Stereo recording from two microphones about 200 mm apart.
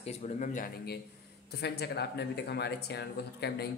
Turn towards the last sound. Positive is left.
turn(degrees=55)  # may be behind; listen again after turning